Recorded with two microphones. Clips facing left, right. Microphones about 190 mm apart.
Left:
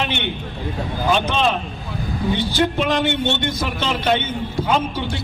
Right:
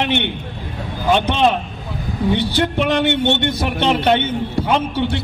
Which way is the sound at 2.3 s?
65° right (ahead or behind).